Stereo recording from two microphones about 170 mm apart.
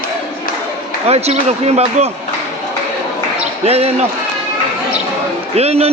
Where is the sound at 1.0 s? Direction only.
40° right (ahead or behind).